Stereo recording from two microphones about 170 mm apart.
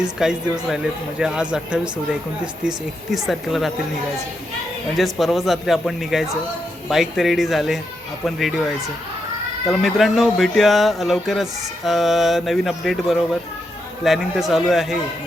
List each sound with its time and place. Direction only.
0.0 s speech: 5° right (ahead or behind)
4.9 s speech: centre (ahead or behind)
9.6 s speech: centre (ahead or behind)